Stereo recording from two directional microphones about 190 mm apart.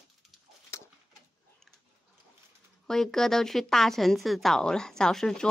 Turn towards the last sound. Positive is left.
turn(degrees=5)  # may be behind; listen again after turning